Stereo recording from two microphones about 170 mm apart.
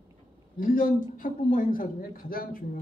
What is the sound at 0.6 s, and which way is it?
Speech, 55° left (ahead or behind).